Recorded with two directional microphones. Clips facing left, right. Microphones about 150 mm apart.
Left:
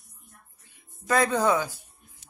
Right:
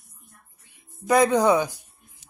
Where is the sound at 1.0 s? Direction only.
15° right (ahead or behind).